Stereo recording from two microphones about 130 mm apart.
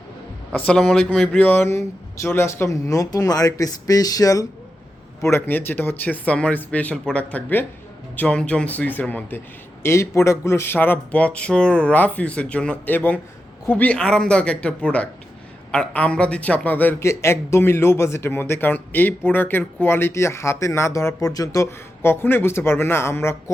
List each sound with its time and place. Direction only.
0.5 s a man's voice: 10° left (ahead or behind)